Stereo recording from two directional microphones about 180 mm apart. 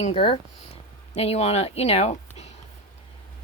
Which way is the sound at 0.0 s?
30° left (ahead or behind).